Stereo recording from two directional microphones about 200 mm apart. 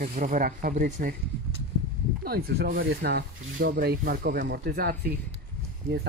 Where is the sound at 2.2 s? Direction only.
50° right (ahead or behind).